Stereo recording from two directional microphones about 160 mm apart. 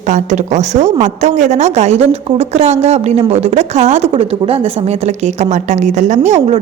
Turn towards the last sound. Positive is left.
turn(degrees=-40)  # may be behind; listen again after turning